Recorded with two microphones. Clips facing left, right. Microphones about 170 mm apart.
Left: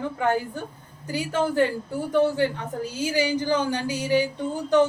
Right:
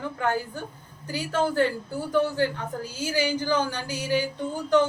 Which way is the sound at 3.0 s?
15° left (ahead or behind).